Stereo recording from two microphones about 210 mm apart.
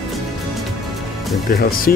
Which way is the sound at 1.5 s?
45° left (ahead or behind).